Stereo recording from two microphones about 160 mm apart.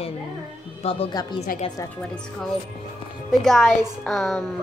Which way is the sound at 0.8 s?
35° left (ahead or behind).